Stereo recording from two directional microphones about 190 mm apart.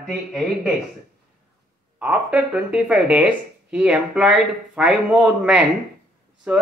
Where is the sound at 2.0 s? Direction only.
5° right (ahead or behind).